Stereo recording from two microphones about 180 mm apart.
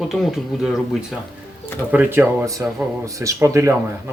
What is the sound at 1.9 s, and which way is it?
Speech, 10° right (ahead or behind).